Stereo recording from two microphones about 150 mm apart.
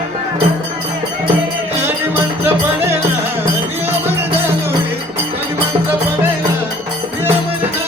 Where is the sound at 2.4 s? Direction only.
15° right (ahead or behind).